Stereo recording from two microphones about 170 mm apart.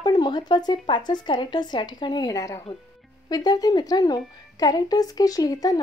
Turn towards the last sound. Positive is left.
turn(degrees=20)  # may be behind; listen again after turning